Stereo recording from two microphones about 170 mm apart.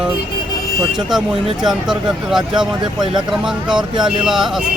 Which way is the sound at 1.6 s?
5° right (ahead or behind).